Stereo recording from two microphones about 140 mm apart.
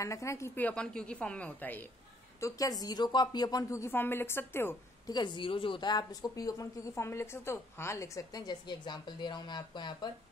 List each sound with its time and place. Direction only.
0.0 s a woman's voice: 20° left (ahead or behind)
2.4 s speech: 25° left (ahead or behind)
5.0 s speech: 30° left (ahead or behind)